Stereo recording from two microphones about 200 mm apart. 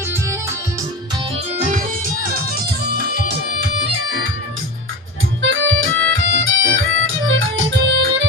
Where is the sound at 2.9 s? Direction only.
55° right (ahead or behind).